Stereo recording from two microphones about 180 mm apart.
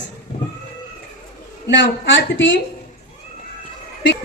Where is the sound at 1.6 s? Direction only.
90° left.